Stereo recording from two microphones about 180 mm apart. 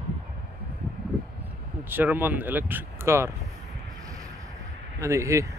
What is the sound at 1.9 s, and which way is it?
Speech, 10° right (ahead or behind).